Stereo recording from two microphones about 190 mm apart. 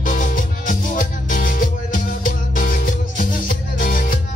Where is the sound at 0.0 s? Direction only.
45° left (ahead or behind).